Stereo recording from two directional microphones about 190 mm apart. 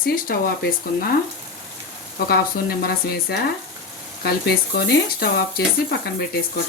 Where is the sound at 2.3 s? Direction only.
55° left (ahead or behind).